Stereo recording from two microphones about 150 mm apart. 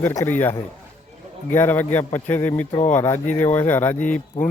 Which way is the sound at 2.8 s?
55° left (ahead or behind).